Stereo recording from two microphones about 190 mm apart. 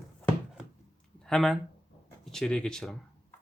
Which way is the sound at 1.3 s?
Centre (ahead or behind).